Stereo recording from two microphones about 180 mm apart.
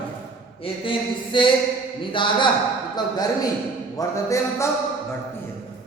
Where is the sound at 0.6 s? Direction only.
30° left (ahead or behind).